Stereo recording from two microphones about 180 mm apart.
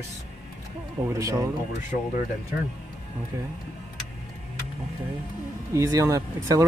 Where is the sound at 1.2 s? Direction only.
20° right (ahead or behind).